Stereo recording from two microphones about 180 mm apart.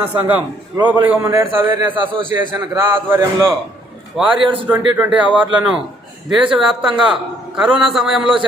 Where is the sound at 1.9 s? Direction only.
30° right (ahead or behind).